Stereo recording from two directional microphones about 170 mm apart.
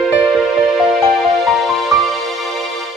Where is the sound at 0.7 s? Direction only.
Centre (ahead or behind).